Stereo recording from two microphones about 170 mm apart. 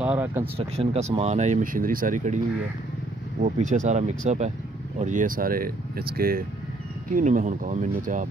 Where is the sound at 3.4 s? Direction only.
45° right (ahead or behind).